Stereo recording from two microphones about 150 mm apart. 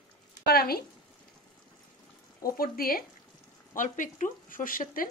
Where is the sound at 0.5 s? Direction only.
90° left.